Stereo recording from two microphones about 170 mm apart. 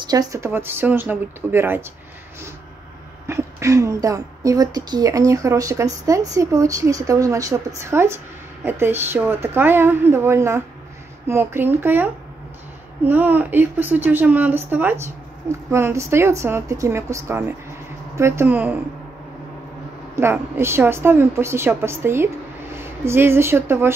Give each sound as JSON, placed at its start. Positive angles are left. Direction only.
{"t": 0.1, "sound": "speech", "side_deg": -20}
{"t": 3.3, "sound": "a woman's voice", "side_deg": -15}
{"t": 20.2, "sound": "speech", "side_deg": -15}